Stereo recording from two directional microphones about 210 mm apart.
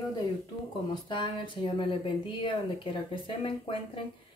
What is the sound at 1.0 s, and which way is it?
Speech, 20° left (ahead or behind).